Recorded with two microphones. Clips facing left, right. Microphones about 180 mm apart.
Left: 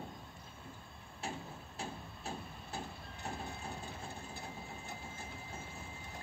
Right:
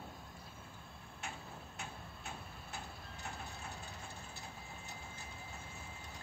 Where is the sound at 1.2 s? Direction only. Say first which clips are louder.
Left 5 dB; 30° left (ahead or behind).